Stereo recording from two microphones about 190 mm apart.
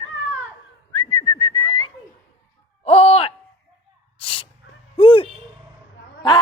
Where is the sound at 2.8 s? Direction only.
35° left (ahead or behind).